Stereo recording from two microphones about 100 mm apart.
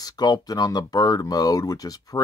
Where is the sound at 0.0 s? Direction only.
40° left (ahead or behind).